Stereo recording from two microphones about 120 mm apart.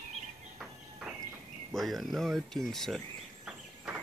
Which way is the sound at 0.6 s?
5° right (ahead or behind).